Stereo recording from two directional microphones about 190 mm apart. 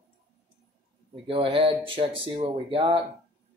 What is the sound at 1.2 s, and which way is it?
Speech, 25° right (ahead or behind).